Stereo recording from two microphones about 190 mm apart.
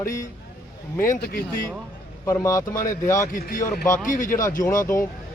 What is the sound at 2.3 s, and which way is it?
A man's voice, 15° left (ahead or behind).